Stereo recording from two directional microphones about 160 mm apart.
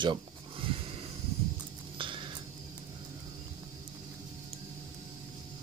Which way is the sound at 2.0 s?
30° right (ahead or behind).